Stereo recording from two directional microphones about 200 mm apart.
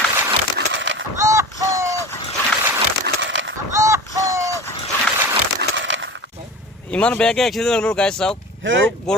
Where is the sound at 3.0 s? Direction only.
65° right (ahead or behind).